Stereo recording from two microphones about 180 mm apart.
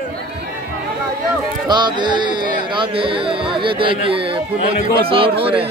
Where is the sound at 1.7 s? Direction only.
25° right (ahead or behind).